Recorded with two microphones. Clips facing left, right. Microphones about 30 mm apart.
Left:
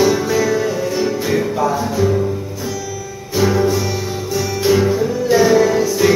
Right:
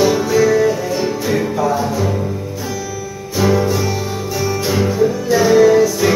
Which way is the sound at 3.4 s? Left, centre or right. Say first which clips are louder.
Even; centre.